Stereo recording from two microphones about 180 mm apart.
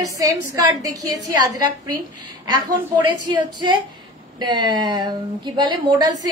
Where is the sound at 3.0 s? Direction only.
25° right (ahead or behind).